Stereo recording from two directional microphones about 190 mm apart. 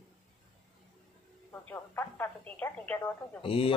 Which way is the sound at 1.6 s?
10° left (ahead or behind).